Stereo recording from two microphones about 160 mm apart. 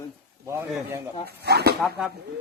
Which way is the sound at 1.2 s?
90° right.